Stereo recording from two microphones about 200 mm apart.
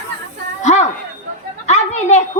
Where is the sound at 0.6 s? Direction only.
35° left (ahead or behind).